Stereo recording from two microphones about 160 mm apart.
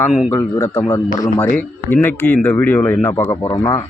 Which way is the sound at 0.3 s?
15° left (ahead or behind).